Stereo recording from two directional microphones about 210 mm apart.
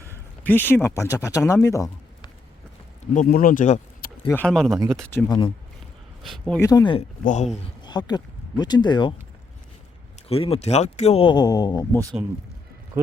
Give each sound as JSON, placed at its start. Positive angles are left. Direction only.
{"t": 0.4, "sound": "speech", "side_deg": 10}
{"t": 3.2, "sound": "speech", "side_deg": 40}
{"t": 4.3, "sound": "speech", "side_deg": 5}
{"t": 4.8, "sound": "speech", "side_deg": -15}
{"t": 6.2, "sound": "speech", "side_deg": 0}
{"t": 6.6, "sound": "speech", "side_deg": 15}
{"t": 7.3, "sound": "speech", "side_deg": 35}
{"t": 7.5, "sound": "speech", "side_deg": 20}
{"t": 10.2, "sound": "speech", "side_deg": 25}